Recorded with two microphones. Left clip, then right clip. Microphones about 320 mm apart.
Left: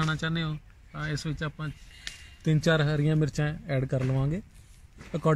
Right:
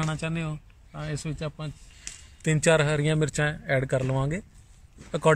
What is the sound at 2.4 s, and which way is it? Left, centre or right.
Speech, right.